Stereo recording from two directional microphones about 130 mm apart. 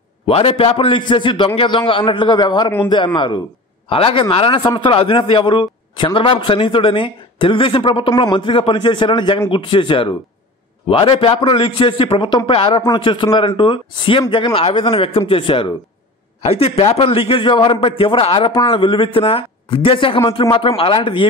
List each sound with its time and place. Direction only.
0.3 s a man's voice: 50° left (ahead or behind)